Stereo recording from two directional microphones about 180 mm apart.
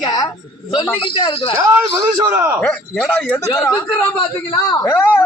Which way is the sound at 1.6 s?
15° right (ahead or behind).